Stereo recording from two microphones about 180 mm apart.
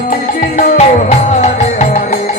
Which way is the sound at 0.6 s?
40° left (ahead or behind).